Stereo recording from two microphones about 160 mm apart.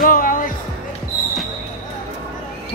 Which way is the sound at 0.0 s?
60° left (ahead or behind).